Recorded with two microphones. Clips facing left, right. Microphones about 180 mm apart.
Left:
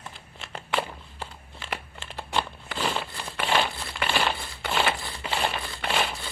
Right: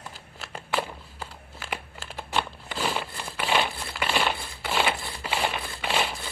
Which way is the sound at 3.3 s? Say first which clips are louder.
Even; 10° right (ahead or behind).